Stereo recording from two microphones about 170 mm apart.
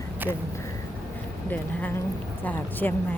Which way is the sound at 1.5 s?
10° left (ahead or behind).